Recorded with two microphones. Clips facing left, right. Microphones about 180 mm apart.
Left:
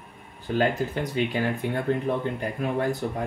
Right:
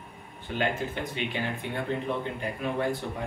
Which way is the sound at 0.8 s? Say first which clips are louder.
Left 6 dB; 40° left (ahead or behind).